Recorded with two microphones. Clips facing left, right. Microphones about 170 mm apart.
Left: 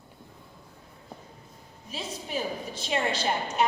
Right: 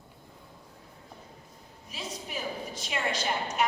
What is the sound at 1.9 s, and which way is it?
A woman's voice, 30° left (ahead or behind).